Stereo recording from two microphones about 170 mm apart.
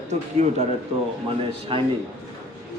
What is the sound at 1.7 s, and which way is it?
Speech, 30° right (ahead or behind).